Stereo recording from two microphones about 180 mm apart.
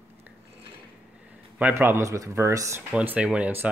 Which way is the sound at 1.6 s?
10° right (ahead or behind).